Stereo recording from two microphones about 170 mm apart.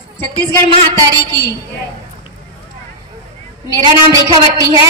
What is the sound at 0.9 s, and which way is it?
Speech, 20° right (ahead or behind).